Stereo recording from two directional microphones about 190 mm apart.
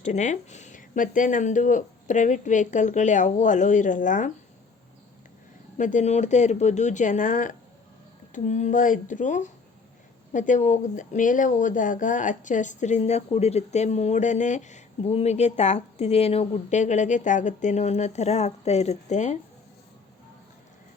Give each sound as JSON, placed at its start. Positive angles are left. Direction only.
{"t": 0.0, "sound": "speech", "side_deg": 40}
{"t": 5.7, "sound": "speech", "side_deg": 40}